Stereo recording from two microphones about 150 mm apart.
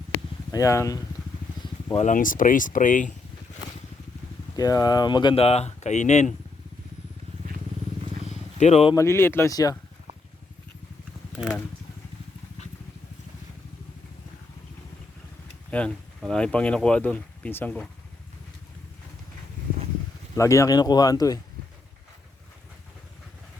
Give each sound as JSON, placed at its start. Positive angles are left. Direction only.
{"t": 0.5, "sound": "speech", "side_deg": 20}
{"t": 2.0, "sound": "speech", "side_deg": 60}
{"t": 4.5, "sound": "speech", "side_deg": 25}
{"t": 8.3, "sound": "wild animals", "side_deg": 50}
{"t": 9.0, "sound": "speech", "side_deg": 15}
{"t": 15.7, "sound": "speech", "side_deg": 5}
{"t": 20.3, "sound": "speech", "side_deg": 20}